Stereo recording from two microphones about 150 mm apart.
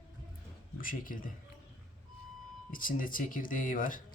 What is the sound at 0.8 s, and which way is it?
Speech, 70° left (ahead or behind).